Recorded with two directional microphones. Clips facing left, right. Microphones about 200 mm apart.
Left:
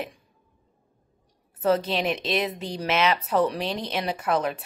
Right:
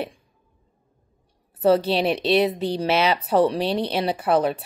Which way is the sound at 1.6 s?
35° right (ahead or behind).